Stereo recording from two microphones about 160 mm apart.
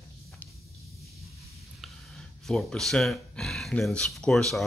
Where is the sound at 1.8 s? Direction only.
Centre (ahead or behind).